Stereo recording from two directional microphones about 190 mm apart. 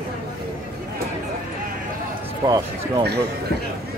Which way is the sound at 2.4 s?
20° right (ahead or behind).